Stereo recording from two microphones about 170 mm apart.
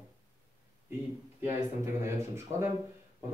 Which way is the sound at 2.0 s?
15° right (ahead or behind).